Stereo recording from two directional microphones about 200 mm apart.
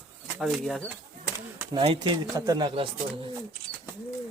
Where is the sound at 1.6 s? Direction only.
25° right (ahead or behind).